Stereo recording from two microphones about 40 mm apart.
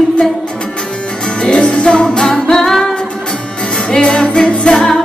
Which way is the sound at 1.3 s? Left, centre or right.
Left.